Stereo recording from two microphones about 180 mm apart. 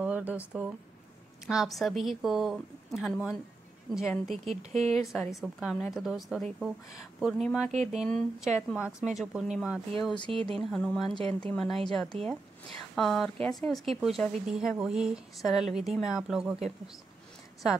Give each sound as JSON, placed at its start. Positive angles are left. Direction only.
{"t": 0.0, "sound": "a sound", "side_deg": -10}
{"t": 1.5, "sound": "speech", "side_deg": 0}
{"t": 10.2, "sound": "speech", "side_deg": -30}
{"t": 10.6, "sound": "speech", "side_deg": 5}